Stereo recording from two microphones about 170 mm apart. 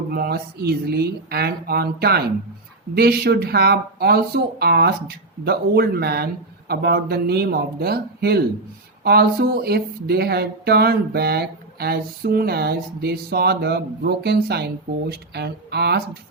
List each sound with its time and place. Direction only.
0.1 s speech: 65° right (ahead or behind)